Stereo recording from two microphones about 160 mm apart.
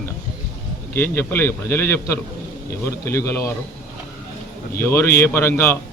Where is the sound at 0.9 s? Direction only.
15° left (ahead or behind).